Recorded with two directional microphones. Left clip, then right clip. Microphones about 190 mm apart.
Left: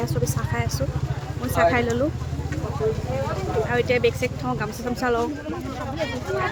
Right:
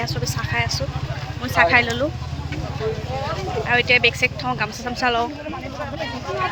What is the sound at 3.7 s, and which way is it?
Speech, 5° left (ahead or behind).